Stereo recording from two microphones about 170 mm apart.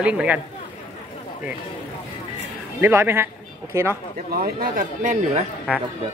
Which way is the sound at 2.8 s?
15° right (ahead or behind).